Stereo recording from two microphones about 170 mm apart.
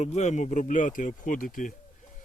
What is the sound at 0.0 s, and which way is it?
Speech, 40° left (ahead or behind).